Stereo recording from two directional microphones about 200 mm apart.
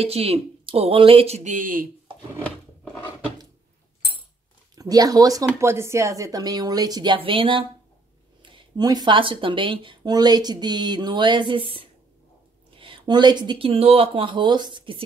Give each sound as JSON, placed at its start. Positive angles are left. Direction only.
{"t": 0.0, "sound": "speech", "side_deg": -30}
{"t": 4.7, "sound": "speech", "side_deg": -20}